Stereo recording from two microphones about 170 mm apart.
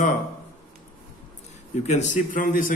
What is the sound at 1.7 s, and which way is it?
Speech, 45° left (ahead or behind).